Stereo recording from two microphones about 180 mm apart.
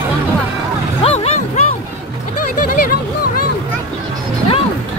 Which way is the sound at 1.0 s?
35° left (ahead or behind).